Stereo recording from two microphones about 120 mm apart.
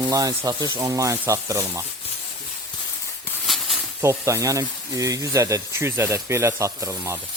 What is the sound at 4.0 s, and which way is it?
Speech, 25° right (ahead or behind).